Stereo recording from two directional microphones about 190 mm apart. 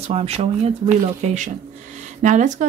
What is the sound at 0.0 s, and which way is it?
Speech, 35° right (ahead or behind).